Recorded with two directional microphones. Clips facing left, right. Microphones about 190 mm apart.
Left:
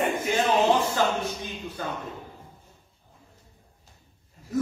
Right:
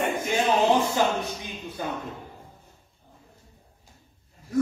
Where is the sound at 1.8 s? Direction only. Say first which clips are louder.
Right 2 dB; 15° right (ahead or behind).